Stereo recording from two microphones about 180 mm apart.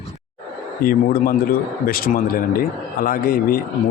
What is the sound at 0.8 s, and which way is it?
A man's voice, 50° left (ahead or behind).